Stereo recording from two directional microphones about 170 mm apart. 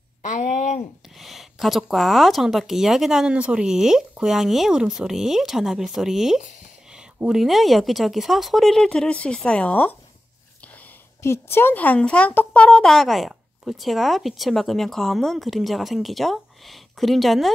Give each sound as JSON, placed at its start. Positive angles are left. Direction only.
{"t": 0.2, "sound": "a sound", "side_deg": 50}
{"t": 1.1, "sound": "speech", "side_deg": 0}
{"t": 11.2, "sound": "speech", "side_deg": 15}